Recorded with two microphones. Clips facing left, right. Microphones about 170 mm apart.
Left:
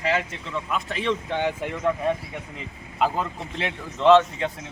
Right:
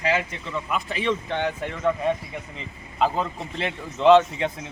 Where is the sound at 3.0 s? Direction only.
5° left (ahead or behind).